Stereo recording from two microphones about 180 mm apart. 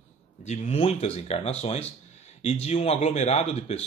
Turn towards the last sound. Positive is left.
turn(degrees=35)  # may be behind; listen again after turning